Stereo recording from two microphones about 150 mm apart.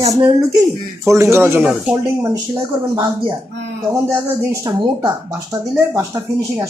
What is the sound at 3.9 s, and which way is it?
Speech, 15° right (ahead or behind).